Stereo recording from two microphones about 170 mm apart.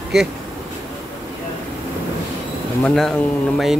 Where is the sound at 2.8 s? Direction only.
5° left (ahead or behind).